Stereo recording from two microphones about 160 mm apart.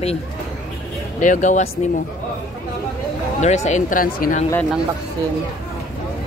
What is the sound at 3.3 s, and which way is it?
A man's voice, 45° left (ahead or behind).